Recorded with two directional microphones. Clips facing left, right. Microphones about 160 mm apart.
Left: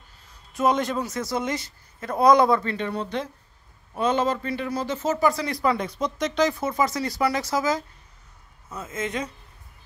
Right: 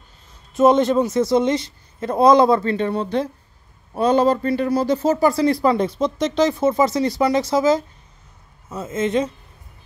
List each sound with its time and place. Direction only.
0.5 s a man's voice: 25° right (ahead or behind)